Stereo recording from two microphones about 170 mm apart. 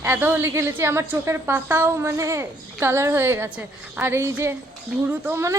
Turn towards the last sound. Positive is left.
turn(degrees=-15)  # may be behind; listen again after turning